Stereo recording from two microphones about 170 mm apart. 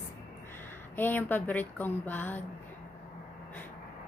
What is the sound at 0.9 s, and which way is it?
Speech, 10° left (ahead or behind).